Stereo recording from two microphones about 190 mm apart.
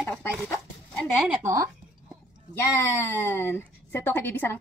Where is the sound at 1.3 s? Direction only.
15° right (ahead or behind).